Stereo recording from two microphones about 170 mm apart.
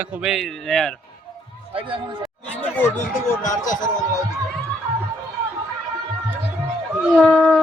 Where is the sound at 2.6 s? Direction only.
10° left (ahead or behind).